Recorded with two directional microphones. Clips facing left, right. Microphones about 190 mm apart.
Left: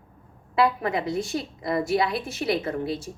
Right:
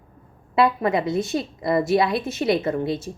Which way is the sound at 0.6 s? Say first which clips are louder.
Right 3 dB; 25° right (ahead or behind).